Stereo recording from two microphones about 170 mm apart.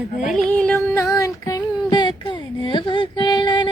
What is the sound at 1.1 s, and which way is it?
Child singing, 20° left (ahead or behind).